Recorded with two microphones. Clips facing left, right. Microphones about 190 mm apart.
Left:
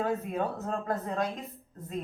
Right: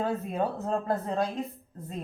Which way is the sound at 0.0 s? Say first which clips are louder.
Right 1 dB; 30° right (ahead or behind).